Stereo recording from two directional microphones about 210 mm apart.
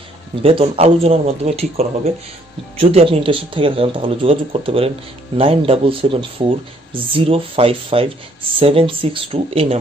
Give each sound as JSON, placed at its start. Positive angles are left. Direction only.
{"t": 0.4, "sound": "speech", "side_deg": -25}